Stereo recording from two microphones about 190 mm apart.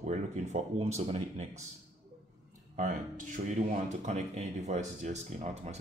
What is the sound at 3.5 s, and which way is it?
Speech, 40° right (ahead or behind).